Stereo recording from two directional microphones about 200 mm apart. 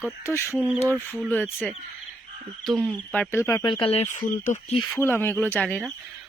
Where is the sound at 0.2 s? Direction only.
15° left (ahead or behind).